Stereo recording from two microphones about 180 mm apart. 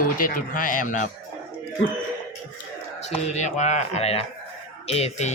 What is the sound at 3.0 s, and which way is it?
Speech, 40° left (ahead or behind).